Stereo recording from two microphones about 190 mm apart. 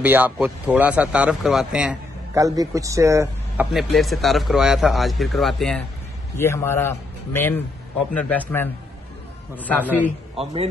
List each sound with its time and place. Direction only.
0.0 s speech: 10° right (ahead or behind)
2.3 s speech: 20° right (ahead or behind)
3.7 s a man's voice: centre (ahead or behind)
6.3 s a man's voice: 15° left (ahead or behind)
10.3 s speech: 30° right (ahead or behind)